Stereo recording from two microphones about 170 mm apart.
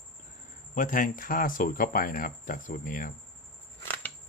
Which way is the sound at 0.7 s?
50° left (ahead or behind).